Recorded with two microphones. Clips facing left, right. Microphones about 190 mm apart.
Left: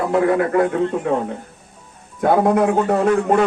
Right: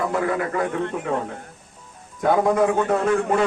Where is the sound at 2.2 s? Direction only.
60° left (ahead or behind).